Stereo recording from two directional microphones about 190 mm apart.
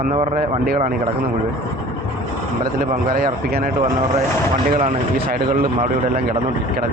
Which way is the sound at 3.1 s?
50° right (ahead or behind).